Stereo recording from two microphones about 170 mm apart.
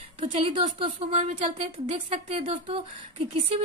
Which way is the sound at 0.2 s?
35° right (ahead or behind).